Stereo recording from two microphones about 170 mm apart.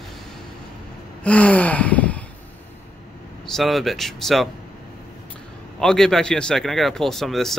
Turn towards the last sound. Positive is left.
turn(degrees=0)  # may be behind; listen again after turning